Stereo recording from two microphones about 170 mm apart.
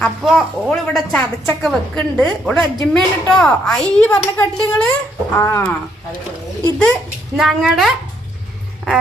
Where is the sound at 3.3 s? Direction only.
5° left (ahead or behind).